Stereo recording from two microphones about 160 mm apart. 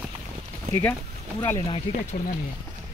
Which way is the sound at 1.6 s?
35° left (ahead or behind).